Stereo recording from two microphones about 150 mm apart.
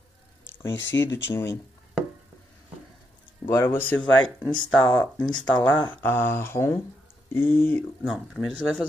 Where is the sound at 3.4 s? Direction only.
15° left (ahead or behind).